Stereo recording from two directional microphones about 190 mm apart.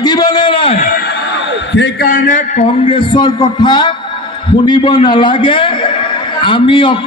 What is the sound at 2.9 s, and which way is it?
A man's voice, 25° left (ahead or behind).